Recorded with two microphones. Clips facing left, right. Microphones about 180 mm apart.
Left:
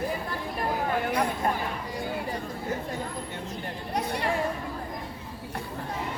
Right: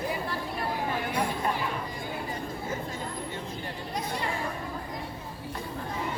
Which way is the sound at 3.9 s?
65° left (ahead or behind).